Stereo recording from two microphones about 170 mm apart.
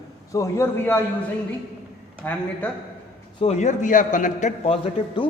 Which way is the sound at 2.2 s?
10° left (ahead or behind).